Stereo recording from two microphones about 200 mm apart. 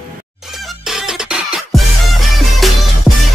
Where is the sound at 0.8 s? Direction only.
Centre (ahead or behind).